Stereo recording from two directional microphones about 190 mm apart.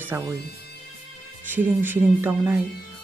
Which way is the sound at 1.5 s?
10° right (ahead or behind).